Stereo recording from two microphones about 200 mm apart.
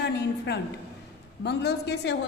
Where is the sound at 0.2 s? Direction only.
60° left (ahead or behind).